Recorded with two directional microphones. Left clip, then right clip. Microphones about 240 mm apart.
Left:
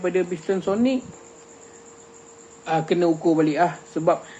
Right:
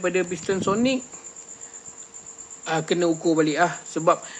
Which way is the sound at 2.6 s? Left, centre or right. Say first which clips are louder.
Left 2 dB; right.